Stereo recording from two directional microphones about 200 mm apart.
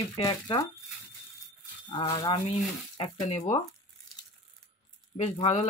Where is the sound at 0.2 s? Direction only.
20° left (ahead or behind).